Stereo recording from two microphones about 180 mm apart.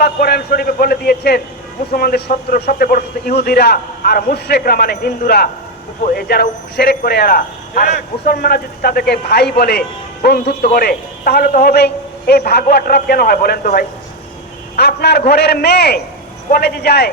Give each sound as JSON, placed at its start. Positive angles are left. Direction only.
{"t": 0.0, "sound": "a man's voice", "side_deg": 60}